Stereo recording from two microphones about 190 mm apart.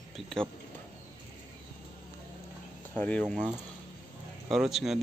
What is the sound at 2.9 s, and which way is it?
Speech, 10° left (ahead or behind).